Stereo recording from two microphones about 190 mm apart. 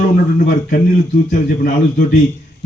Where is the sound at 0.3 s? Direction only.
45° left (ahead or behind).